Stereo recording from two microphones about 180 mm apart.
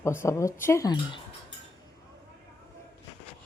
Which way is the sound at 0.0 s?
15° left (ahead or behind).